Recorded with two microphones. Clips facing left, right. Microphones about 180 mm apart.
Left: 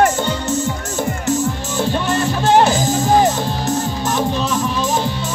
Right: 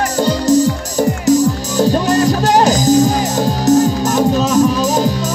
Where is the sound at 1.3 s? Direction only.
40° right (ahead or behind).